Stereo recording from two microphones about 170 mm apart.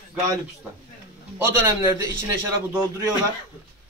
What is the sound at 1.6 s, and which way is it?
Speech, 25° right (ahead or behind).